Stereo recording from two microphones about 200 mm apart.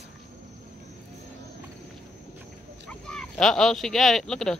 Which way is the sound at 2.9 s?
5° left (ahead or behind).